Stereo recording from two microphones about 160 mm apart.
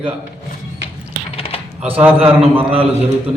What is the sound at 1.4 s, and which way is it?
Coin, 35° left (ahead or behind).